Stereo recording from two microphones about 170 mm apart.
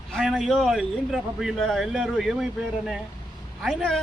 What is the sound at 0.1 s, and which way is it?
A man's voice, centre (ahead or behind).